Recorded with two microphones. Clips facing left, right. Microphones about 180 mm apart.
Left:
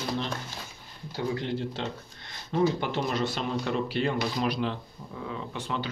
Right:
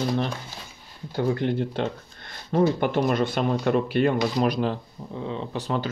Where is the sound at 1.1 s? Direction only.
55° right (ahead or behind).